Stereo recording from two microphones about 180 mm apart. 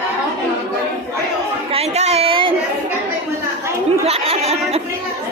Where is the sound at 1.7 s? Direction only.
35° right (ahead or behind).